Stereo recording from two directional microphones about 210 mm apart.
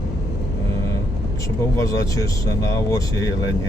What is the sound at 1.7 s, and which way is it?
Speech, 15° left (ahead or behind).